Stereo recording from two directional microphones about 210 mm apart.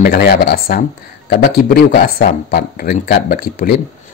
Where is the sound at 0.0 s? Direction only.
45° left (ahead or behind).